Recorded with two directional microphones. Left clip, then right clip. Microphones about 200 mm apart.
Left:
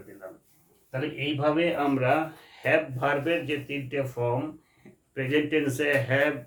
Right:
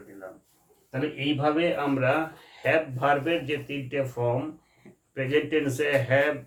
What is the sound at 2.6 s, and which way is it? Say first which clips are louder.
Speech: even; 5° left (ahead or behind).